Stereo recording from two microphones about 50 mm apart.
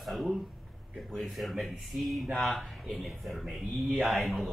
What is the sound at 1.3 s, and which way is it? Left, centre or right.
Speech, centre.